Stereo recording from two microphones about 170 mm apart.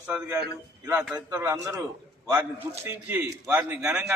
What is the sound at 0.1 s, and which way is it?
Speech, 5° right (ahead or behind).